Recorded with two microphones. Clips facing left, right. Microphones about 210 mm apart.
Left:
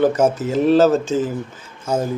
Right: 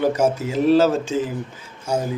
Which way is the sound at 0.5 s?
10° right (ahead or behind).